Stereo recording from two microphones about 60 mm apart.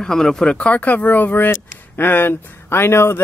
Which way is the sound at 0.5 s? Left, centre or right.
Left.